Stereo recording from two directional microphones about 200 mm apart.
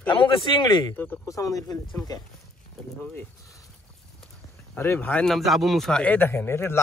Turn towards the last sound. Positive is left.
turn(degrees=10)  # may be behind; listen again after turning